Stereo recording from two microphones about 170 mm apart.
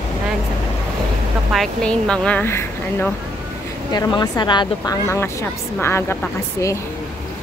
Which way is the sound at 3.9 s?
25° left (ahead or behind).